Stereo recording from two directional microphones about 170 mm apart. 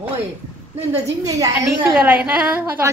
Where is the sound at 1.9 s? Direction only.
10° right (ahead or behind).